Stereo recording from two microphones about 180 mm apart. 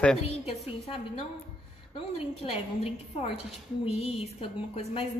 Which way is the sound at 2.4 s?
35° left (ahead or behind).